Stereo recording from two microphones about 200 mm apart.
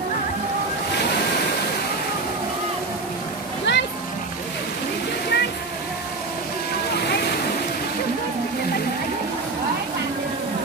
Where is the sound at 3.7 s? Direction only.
60° left (ahead or behind).